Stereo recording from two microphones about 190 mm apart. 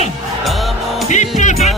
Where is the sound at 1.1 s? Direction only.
40° left (ahead or behind).